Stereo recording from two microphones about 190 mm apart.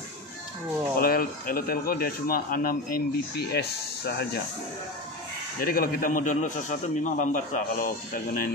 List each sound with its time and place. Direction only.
0.9 s speech: 50° left (ahead or behind)
5.6 s speech: 50° left (ahead or behind)